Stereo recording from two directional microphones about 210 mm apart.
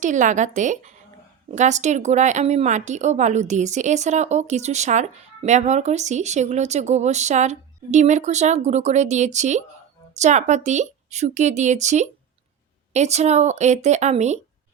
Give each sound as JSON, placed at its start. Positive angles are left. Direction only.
{"t": 0.0, "sound": "a woman's voice", "side_deg": -35}